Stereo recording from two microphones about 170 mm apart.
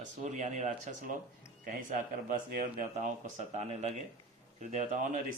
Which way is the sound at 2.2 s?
50° right (ahead or behind).